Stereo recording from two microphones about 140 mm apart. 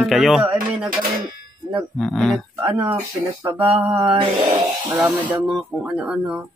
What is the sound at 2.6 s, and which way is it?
Speech, 10° right (ahead or behind).